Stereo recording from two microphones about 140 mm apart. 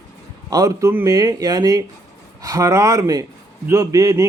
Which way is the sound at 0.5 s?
25° right (ahead or behind).